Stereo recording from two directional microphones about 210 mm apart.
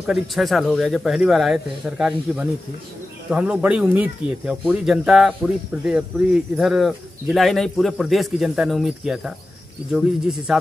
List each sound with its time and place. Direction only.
0.0 s speech: centre (ahead or behind)